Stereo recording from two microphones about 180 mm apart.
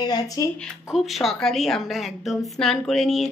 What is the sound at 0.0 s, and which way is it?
Speech, 20° left (ahead or behind).